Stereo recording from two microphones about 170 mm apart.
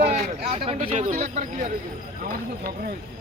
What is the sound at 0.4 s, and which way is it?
Speech, 35° right (ahead or behind).